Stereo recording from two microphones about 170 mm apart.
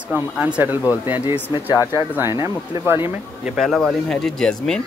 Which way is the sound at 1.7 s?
20° left (ahead or behind).